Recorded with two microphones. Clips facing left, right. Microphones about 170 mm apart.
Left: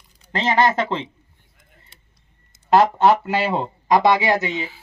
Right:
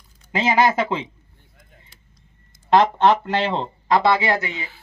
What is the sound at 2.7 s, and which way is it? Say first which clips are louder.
Speech: left 1 dB; 10° left (ahead or behind).